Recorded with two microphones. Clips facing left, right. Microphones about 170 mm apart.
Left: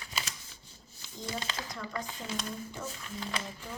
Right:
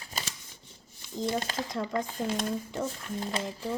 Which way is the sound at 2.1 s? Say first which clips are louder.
Right 8 dB; 50° right (ahead or behind).